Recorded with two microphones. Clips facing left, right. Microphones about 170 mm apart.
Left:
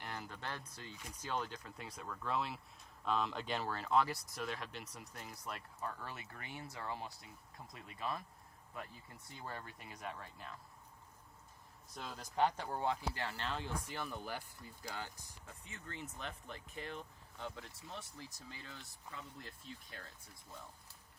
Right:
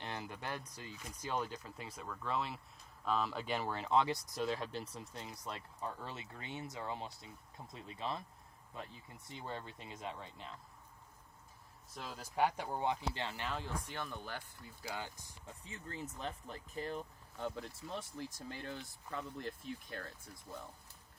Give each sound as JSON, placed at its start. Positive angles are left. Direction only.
{"t": 0.0, "sound": "speech", "side_deg": -20}
{"t": 9.2, "sound": "speech", "side_deg": -20}
{"t": 11.9, "sound": "speech", "side_deg": -5}
{"t": 13.5, "sound": "speech", "side_deg": 0}
{"t": 14.8, "sound": "speech", "side_deg": -15}
{"t": 15.6, "sound": "speech", "side_deg": -35}